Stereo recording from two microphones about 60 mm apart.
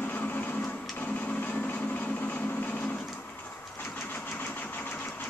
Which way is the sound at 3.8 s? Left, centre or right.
Left.